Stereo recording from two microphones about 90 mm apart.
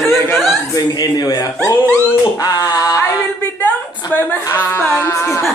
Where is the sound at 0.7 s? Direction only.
50° left (ahead or behind).